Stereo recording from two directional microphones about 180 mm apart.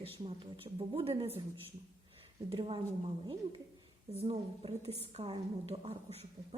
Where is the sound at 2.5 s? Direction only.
30° right (ahead or behind).